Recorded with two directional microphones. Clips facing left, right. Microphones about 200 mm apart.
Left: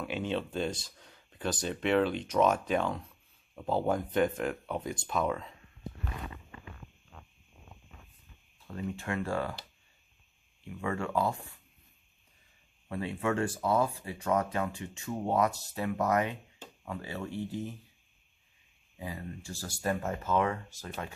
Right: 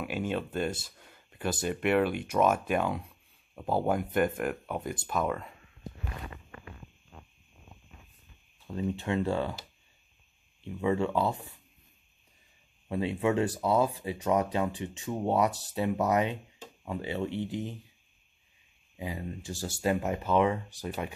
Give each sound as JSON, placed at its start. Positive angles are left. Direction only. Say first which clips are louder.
{"t": 0.0, "sound": "speech", "louder": "right 1 dB", "side_deg": -10}
{"t": 6.7, "sound": "a sound", "louder": "right 1 dB", "side_deg": -5}
{"t": 8.7, "sound": "speech", "louder": "right 5 dB", "side_deg": -20}
{"t": 10.6, "sound": "speech", "louder": "right 6 dB", "side_deg": -20}
{"t": 12.8, "sound": "speech", "louder": "right 4 dB", "side_deg": -20}
{"t": 18.9, "sound": "speech", "louder": "right 3 dB", "side_deg": -15}